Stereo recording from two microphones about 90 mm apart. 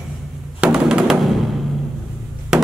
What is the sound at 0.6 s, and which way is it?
Music, 10° right (ahead or behind).